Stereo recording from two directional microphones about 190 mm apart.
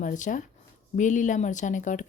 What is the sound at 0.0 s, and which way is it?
Speech, 40° left (ahead or behind).